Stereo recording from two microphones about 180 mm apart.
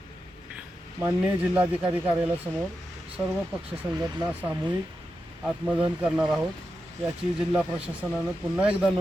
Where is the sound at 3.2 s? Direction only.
15° right (ahead or behind).